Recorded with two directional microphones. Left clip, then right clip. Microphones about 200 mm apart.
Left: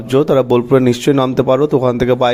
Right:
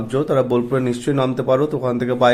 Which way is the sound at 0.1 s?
35° left (ahead or behind).